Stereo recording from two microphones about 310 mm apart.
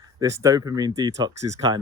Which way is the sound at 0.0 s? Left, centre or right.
Centre.